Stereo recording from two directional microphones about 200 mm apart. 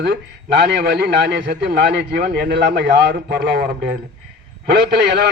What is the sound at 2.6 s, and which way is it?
Speech, 60° right (ahead or behind).